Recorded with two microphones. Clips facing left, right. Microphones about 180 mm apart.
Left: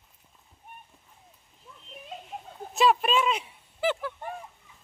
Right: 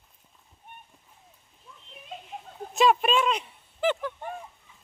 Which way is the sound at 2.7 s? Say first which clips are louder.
Right 1 dB; centre (ahead or behind).